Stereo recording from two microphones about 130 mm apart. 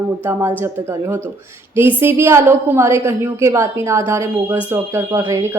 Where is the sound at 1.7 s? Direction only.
15° right (ahead or behind).